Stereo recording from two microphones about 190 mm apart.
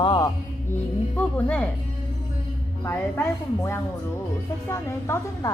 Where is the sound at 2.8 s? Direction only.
15° left (ahead or behind).